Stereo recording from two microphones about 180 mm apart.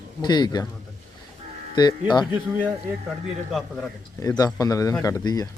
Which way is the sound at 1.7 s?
25° left (ahead or behind).